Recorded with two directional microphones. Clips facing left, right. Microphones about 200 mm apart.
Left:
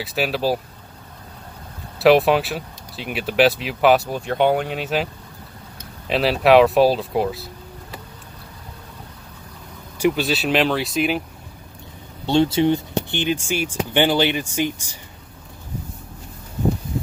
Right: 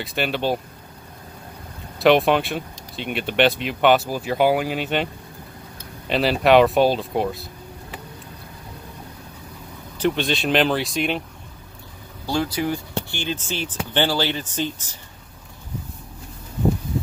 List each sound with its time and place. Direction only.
0.0 s speech: centre (ahead or behind)
2.0 s speech: centre (ahead or behind)
9.9 s speech: 5° left (ahead or behind)
12.3 s speech: 25° left (ahead or behind)